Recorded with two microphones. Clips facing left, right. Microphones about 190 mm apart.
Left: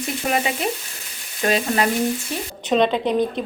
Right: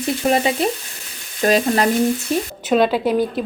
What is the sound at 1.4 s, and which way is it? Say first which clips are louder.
Stir: right 4 dB; 40° right (ahead or behind).